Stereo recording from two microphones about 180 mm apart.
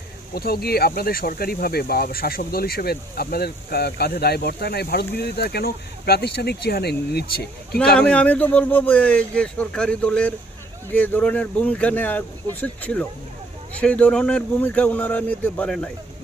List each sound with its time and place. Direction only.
0.3 s speech: 60° left (ahead or behind)
7.9 s a man's voice: 5° left (ahead or behind)